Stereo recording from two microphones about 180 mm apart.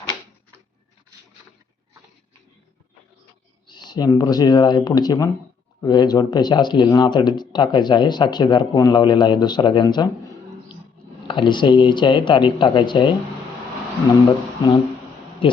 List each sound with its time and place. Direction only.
3.7 s speech: 25° left (ahead or behind)
11.3 s speech: 25° left (ahead or behind)
14.3 s speech: 25° left (ahead or behind)